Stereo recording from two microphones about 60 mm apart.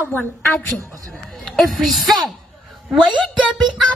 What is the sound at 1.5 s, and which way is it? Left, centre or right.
Speech, centre.